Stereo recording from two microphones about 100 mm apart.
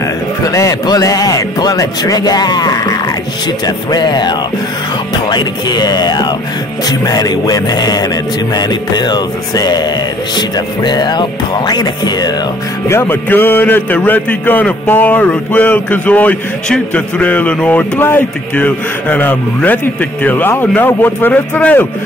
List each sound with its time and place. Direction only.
0.4 s speech: 35° left (ahead or behind)
3.6 s music: 45° left (ahead or behind)
6.9 s speech: 40° left (ahead or behind)
8.5 s music: 45° left (ahead or behind)
12.8 s a man's voice: 25° left (ahead or behind)